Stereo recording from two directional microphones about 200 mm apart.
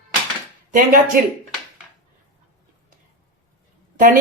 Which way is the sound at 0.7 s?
45° right (ahead or behind).